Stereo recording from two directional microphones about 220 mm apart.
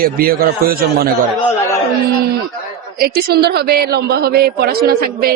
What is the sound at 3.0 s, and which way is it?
A woman's voice, 45° right (ahead or behind).